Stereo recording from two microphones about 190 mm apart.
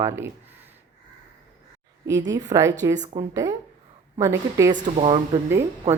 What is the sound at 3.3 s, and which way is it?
Speech, 20° right (ahead or behind).